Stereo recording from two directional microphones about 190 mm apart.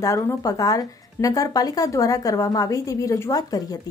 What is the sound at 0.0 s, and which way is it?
Speech, 15° left (ahead or behind).